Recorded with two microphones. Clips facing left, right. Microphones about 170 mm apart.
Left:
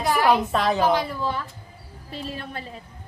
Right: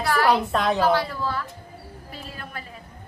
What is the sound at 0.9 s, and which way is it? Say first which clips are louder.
A woman's voice: even; 15° left (ahead or behind).